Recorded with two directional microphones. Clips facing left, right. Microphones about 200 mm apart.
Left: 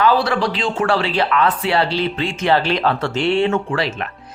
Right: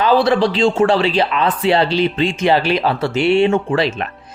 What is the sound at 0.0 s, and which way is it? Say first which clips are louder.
Speech: right 3 dB; 25° right (ahead or behind).